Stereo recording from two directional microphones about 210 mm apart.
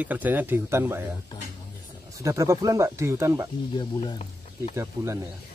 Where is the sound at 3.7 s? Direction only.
20° left (ahead or behind).